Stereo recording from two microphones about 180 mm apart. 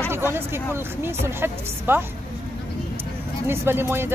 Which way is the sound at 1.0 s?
15° right (ahead or behind).